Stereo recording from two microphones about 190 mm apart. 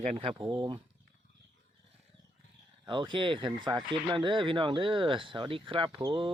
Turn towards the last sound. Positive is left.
turn(degrees=-25)  # may be behind; listen again after turning